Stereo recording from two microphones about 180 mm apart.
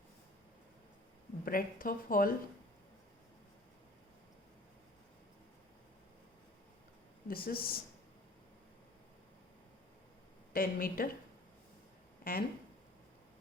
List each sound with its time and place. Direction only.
1.5 s speech: 50° left (ahead or behind)
7.3 s speech: 55° left (ahead or behind)
10.5 s speech: 50° left (ahead or behind)
12.2 s speech: 55° left (ahead or behind)